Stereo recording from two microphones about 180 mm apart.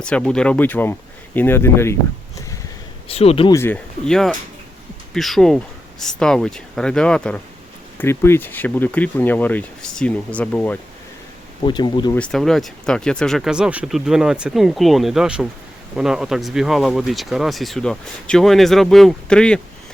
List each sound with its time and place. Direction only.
0.0 s speech: 5° left (ahead or behind)
3.1 s speech: 35° left (ahead or behind)
3.5 s speech: 10° left (ahead or behind)
11.6 s speech: 25° left (ahead or behind)
12.1 s speech: 5° left (ahead or behind)